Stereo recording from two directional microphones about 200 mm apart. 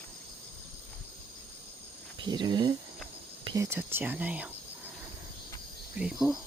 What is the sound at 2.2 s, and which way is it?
Speech, 20° right (ahead or behind).